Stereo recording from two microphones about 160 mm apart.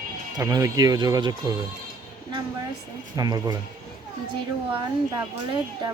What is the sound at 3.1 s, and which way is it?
Speech, 25° right (ahead or behind).